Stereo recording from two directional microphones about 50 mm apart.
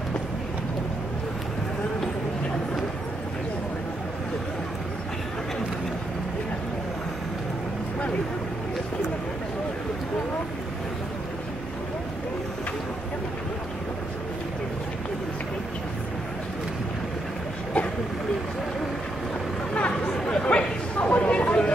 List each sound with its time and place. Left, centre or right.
19.9 s chatter: centre
20.2 s chatter: left